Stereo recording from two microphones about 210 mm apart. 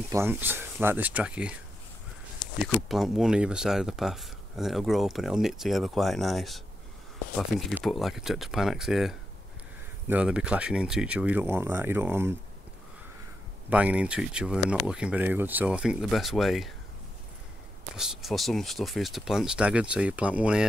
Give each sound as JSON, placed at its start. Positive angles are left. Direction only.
{"t": 0.1, "sound": "speech", "side_deg": -10}
{"t": 2.6, "sound": "speech", "side_deg": 0}
{"t": 13.7, "sound": "speech", "side_deg": -5}
{"t": 17.9, "sound": "speech", "side_deg": 0}